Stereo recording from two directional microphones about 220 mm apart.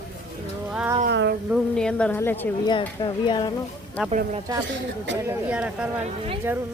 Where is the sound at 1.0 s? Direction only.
50° right (ahead or behind).